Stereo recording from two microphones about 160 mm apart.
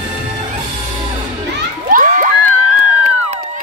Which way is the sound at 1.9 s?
55° right (ahead or behind).